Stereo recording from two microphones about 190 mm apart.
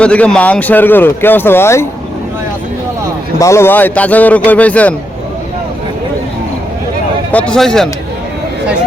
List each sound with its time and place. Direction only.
0.0 s speech: 5° left (ahead or behind)
3.4 s speech: 15° left (ahead or behind)
7.3 s a man's voice: 5° left (ahead or behind)